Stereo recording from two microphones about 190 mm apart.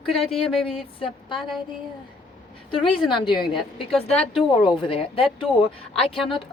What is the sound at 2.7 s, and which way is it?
Speech, 30° left (ahead or behind).